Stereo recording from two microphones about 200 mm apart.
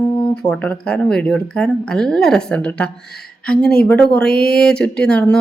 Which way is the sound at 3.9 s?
5° left (ahead or behind).